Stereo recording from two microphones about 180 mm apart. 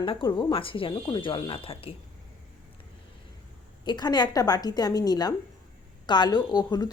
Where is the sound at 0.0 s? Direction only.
25° left (ahead or behind).